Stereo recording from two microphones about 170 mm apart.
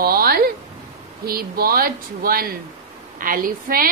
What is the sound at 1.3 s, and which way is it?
A woman's voice, 60° right (ahead or behind).